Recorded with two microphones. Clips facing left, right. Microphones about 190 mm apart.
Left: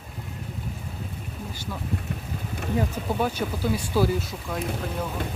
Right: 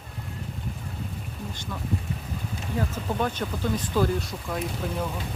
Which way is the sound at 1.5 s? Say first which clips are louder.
Left 1 dB; 5° left (ahead or behind).